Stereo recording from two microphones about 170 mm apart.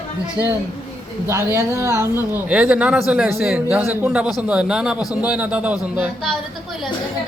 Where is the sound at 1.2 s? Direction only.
15° right (ahead or behind).